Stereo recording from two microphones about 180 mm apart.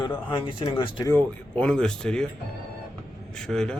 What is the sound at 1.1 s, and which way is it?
Speech, 10° left (ahead or behind).